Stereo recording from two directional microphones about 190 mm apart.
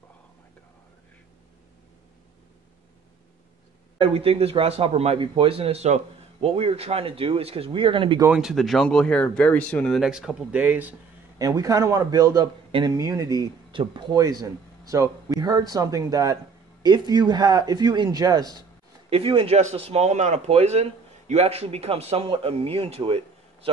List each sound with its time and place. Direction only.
4.0 s speech: 30° right (ahead or behind)
8.3 s speech: centre (ahead or behind); by 18.6 s 20° right (ahead or behind)
19.0 s speech: 30° right (ahead or behind)